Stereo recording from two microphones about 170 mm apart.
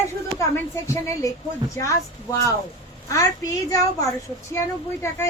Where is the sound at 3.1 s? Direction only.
20° left (ahead or behind).